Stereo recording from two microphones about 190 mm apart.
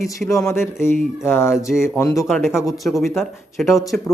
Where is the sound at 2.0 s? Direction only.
10° left (ahead or behind).